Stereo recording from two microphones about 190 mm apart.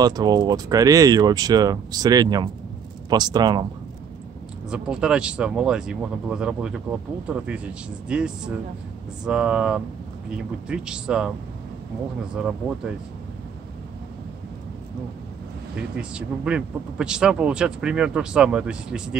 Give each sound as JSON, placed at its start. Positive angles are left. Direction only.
{"t": 0.0, "sound": "speech", "side_deg": -20}
{"t": 4.6, "sound": "speech", "side_deg": -5}
{"t": 12.4, "sound": "speech", "side_deg": -5}
{"t": 15.7, "sound": "speech", "side_deg": -5}